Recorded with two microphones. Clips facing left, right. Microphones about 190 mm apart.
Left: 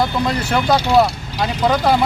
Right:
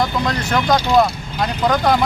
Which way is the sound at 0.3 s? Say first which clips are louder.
Left 1 dB; 5° left (ahead or behind).